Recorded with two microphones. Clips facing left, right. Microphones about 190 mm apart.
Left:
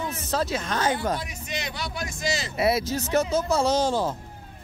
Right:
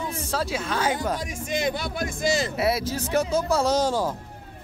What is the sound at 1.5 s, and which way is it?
Speech, 50° right (ahead or behind).